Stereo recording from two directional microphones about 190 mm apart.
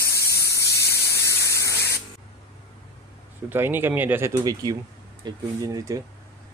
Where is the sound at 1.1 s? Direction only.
15° left (ahead or behind).